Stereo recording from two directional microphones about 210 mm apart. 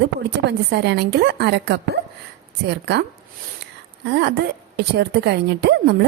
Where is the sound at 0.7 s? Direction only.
55° right (ahead or behind).